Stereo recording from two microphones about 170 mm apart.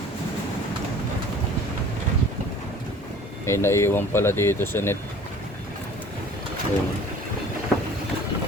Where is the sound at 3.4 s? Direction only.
15° left (ahead or behind).